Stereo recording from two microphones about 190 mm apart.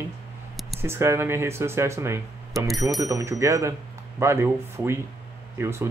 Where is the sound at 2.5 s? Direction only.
Centre (ahead or behind).